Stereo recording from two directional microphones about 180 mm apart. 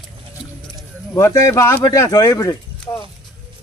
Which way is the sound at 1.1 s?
15° left (ahead or behind).